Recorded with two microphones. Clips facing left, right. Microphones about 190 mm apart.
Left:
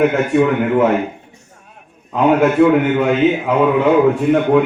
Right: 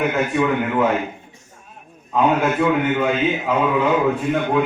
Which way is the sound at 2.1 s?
65° left (ahead or behind).